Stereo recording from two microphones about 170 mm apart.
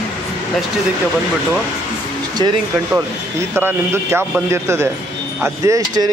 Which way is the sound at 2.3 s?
25° right (ahead or behind).